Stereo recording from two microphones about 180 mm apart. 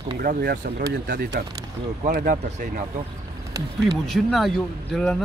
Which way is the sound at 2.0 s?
50° right (ahead or behind).